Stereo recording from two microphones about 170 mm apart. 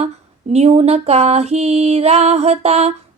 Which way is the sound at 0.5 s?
40° right (ahead or behind).